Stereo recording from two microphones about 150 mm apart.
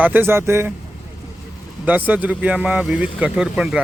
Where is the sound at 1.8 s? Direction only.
10° right (ahead or behind).